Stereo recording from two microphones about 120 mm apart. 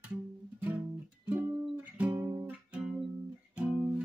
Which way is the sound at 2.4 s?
10° right (ahead or behind).